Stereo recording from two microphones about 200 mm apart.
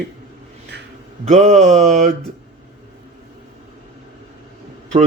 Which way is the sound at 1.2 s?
35° right (ahead or behind).